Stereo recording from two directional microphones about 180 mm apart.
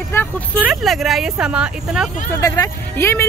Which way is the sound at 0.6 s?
Centre (ahead or behind).